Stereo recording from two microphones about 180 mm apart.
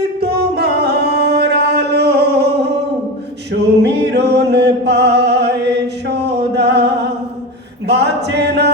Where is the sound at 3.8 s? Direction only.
70° right (ahead or behind).